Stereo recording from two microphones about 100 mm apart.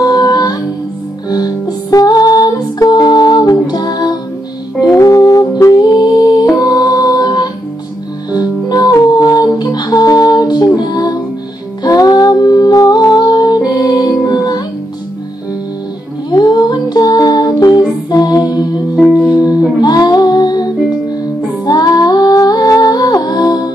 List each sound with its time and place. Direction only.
0.0 s music: 40° left (ahead or behind)
16.3 s music: 45° left (ahead or behind)
19.8 s music: 45° left (ahead or behind)